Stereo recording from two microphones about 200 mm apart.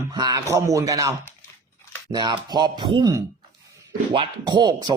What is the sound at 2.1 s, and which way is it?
Speech, 20° right (ahead or behind).